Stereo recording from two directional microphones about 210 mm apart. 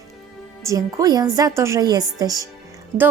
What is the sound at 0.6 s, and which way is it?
Speech, 15° right (ahead or behind).